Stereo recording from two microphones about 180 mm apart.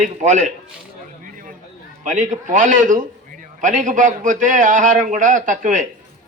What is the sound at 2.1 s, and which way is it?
A man's voice, 45° right (ahead or behind).